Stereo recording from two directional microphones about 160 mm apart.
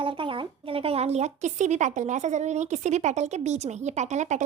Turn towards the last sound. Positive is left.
turn(degrees=-45)  # may be behind; listen again after turning